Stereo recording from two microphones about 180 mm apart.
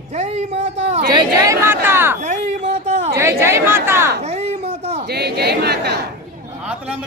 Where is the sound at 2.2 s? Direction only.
40° right (ahead or behind).